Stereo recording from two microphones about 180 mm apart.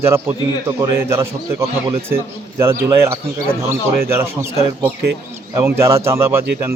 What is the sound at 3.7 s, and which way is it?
Speech, 15° right (ahead or behind).